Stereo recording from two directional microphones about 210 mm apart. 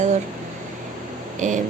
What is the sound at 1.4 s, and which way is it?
Speech, 35° right (ahead or behind).